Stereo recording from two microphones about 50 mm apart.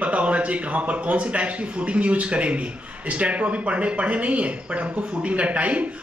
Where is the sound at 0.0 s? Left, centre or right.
Right.